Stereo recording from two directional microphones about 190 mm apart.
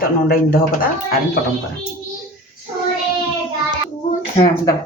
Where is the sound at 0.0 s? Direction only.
50° left (ahead or behind).